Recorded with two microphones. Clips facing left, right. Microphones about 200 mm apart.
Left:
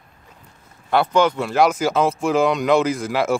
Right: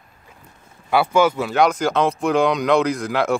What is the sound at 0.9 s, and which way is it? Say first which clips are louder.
Speech: even; 5° right (ahead or behind).